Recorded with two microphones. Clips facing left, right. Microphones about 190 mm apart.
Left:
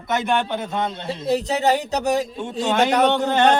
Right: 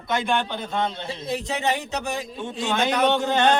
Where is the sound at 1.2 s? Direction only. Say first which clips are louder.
Left 6 dB; 40° left (ahead or behind).